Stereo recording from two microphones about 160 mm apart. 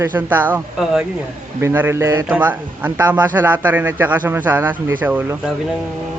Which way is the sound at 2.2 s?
10° right (ahead or behind).